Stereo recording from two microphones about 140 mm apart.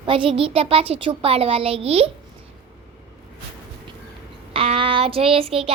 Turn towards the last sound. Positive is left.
turn(degrees=-45)  # may be behind; listen again after turning